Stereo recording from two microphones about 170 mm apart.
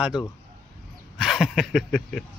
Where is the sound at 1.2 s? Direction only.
Centre (ahead or behind).